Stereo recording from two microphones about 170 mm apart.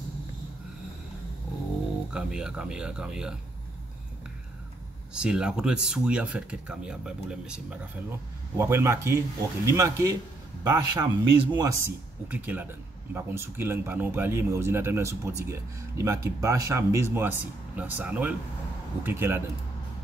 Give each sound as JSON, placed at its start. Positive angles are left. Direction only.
{"t": 2.1, "sound": "speech", "side_deg": -5}
{"t": 5.1, "sound": "speech", "side_deg": -5}
{"t": 8.5, "sound": "speech", "side_deg": -15}
{"t": 12.3, "sound": "speech", "side_deg": -10}